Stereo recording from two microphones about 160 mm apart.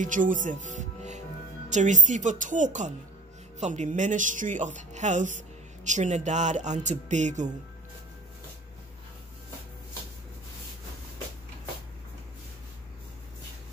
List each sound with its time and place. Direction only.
0.0 s speech: 55° right (ahead or behind)